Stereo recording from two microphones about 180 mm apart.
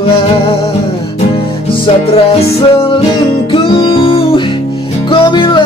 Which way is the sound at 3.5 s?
25° left (ahead or behind).